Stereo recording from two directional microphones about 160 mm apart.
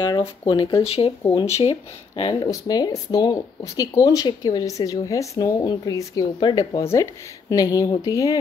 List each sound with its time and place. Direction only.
0.1 s speech: 25° left (ahead or behind)
0.8 s speech: 40° left (ahead or behind)
1.2 s speech: 20° left (ahead or behind)
1.5 s speech: 40° left (ahead or behind)
2.5 s speech: 20° left (ahead or behind)